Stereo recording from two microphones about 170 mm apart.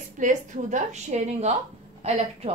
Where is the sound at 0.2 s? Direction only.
45° right (ahead or behind).